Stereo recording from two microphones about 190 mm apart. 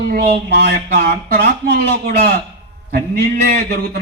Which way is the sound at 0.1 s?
55° right (ahead or behind).